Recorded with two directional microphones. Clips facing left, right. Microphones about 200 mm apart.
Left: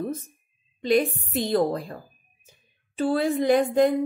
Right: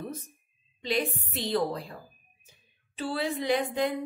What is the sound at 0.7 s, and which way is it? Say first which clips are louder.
A woman's voice: left 8 dB; 50° left (ahead or behind).